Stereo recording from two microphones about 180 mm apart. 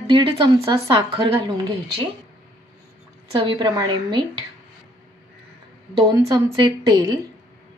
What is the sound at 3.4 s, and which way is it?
Speech, 25° right (ahead or behind).